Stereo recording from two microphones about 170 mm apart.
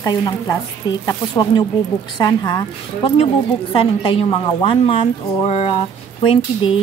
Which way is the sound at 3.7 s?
30° left (ahead or behind).